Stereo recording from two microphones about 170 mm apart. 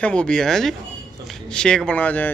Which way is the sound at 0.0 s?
5° left (ahead or behind).